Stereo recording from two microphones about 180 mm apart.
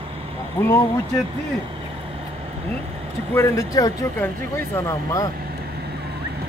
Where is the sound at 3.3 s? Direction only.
15° left (ahead or behind).